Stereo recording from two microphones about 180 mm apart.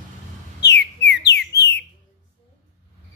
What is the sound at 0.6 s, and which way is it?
Bird, 70° left (ahead or behind).